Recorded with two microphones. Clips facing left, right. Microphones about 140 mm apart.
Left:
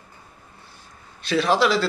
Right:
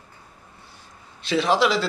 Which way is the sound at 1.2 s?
20° right (ahead or behind).